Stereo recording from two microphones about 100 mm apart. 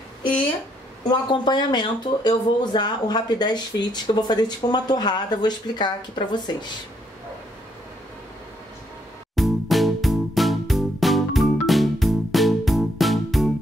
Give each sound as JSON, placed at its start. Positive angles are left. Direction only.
{"t": 1.3, "sound": "speech", "side_deg": 50}
{"t": 9.3, "sound": "music", "side_deg": 0}